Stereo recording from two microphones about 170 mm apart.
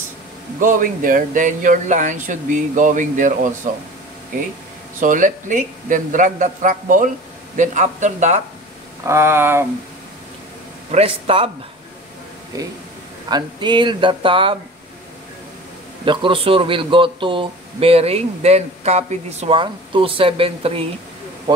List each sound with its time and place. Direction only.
0.6 s speech: 55° right (ahead or behind)
5.0 s speech: 50° right (ahead or behind)
9.0 s speech: 15° right (ahead or behind)
10.9 s speech: 35° right (ahead or behind)
12.5 s speech: 20° right (ahead or behind)
16.1 s speech: 30° right (ahead or behind)